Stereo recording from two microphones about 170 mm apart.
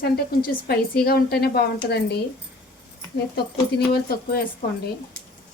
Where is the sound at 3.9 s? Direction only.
60° left (ahead or behind).